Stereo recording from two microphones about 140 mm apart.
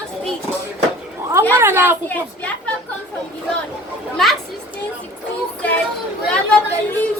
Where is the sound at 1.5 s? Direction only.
20° right (ahead or behind).